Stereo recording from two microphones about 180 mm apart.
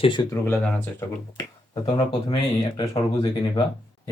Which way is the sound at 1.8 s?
30° left (ahead or behind).